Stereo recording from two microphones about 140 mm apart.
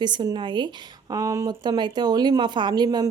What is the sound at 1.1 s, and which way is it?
Speech, 20° right (ahead or behind).